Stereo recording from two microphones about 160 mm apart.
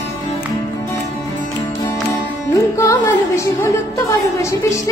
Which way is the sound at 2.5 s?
15° left (ahead or behind).